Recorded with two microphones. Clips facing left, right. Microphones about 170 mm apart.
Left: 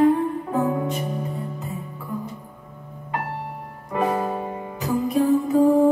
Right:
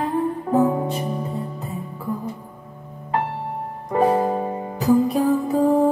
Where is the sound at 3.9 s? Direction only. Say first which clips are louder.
Right 5 dB; 30° right (ahead or behind).